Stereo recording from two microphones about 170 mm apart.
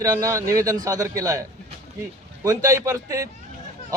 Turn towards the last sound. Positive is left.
turn(degrees=-20)  # may be behind; listen again after turning